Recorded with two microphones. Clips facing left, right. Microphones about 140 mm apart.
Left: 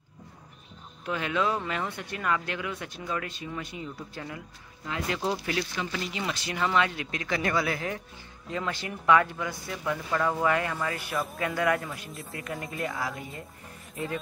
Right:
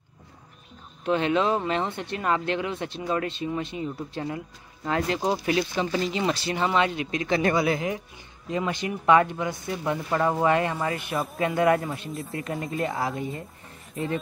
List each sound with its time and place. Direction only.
1.0 s speech: 25° right (ahead or behind)
5.9 s speech: 35° right (ahead or behind)